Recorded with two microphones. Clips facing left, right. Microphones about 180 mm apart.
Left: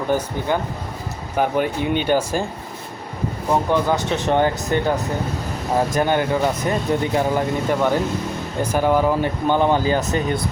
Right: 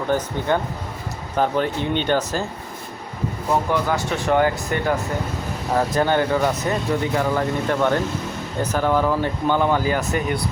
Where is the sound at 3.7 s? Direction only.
20° left (ahead or behind).